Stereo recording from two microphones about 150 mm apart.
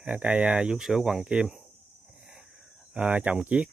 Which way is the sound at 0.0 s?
10° right (ahead or behind).